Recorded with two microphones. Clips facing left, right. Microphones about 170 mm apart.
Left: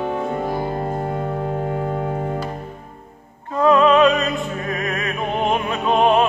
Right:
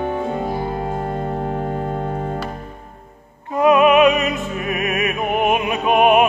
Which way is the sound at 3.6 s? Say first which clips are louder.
Right 1 dB; 15° right (ahead or behind).